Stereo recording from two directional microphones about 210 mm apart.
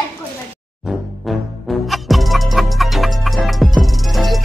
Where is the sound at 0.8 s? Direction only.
Centre (ahead or behind).